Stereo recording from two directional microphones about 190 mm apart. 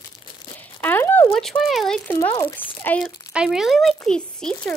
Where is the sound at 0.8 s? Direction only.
10° left (ahead or behind).